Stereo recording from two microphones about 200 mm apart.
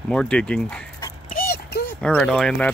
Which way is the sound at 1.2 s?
45° left (ahead or behind).